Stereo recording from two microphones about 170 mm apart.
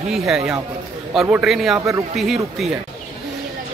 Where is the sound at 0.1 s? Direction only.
Centre (ahead or behind).